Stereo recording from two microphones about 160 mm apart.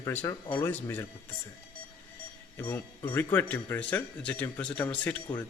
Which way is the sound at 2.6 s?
15° left (ahead or behind).